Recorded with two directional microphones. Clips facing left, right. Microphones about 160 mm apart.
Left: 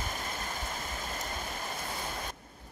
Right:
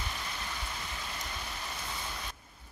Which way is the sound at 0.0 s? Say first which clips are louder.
Left 3 dB; 45° left (ahead or behind).